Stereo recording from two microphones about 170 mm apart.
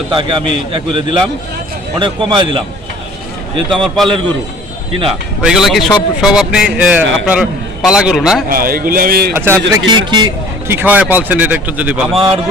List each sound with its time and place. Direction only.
0.1 s a man's voice: 30° right (ahead or behind)
3.7 s a man's voice: centre (ahead or behind)
5.4 s a man's voice: 5° right (ahead or behind)
8.4 s a man's voice: 60° right (ahead or behind)
9.3 s speech: 15° right (ahead or behind)
9.9 s speech: 25° right (ahead or behind)
10.7 s speech: 10° right (ahead or behind)
12.1 s a man's voice: 35° right (ahead or behind)